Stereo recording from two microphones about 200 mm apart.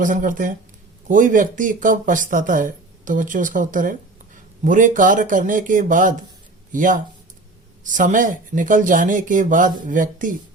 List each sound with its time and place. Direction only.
0.0 s speech: 40° right (ahead or behind)